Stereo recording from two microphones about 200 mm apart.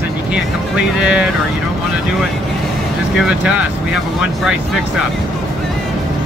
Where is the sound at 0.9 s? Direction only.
5° right (ahead or behind).